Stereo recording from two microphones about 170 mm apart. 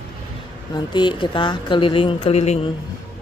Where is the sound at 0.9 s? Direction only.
25° left (ahead or behind).